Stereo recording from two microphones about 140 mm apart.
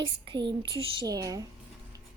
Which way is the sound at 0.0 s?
35° right (ahead or behind).